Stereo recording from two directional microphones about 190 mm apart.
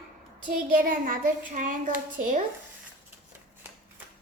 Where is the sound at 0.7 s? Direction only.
45° right (ahead or behind).